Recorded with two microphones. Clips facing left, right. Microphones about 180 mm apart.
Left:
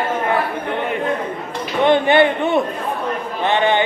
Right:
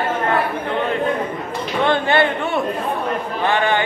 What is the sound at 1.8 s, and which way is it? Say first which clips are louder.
Speech: left 4 dB; 20° left (ahead or behind).